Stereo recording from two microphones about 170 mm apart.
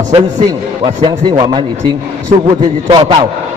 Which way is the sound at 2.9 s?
30° right (ahead or behind).